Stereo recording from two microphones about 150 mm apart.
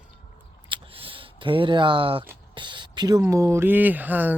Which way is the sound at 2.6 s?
30° right (ahead or behind).